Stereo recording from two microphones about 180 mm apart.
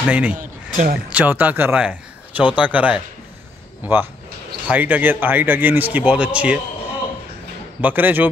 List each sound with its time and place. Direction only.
0.1 s speech: 5° right (ahead or behind)
0.4 s a sound: 45° right (ahead or behind)
1.1 s speech: 10° right (ahead or behind)
7.8 s speech: 10° right (ahead or behind)